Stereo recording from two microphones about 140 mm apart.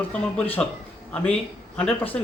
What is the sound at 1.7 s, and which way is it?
Speech, 10° left (ahead or behind).